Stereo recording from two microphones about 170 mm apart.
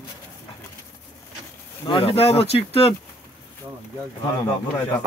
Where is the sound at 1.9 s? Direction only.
35° left (ahead or behind).